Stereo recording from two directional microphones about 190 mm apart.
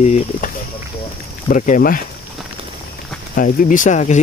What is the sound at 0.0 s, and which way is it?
Speech, 40° left (ahead or behind).